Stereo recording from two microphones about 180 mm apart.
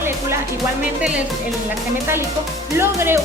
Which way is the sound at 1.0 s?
5° right (ahead or behind).